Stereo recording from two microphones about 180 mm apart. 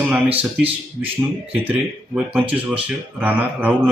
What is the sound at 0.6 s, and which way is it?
Speech, 30° right (ahead or behind).